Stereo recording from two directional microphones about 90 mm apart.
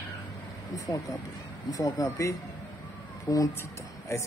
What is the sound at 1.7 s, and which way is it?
Speech, 45° left (ahead or behind).